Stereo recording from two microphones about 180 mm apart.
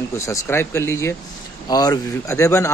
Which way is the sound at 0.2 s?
15° left (ahead or behind).